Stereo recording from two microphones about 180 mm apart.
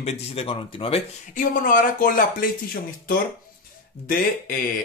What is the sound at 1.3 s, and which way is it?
Speech, 50° left (ahead or behind).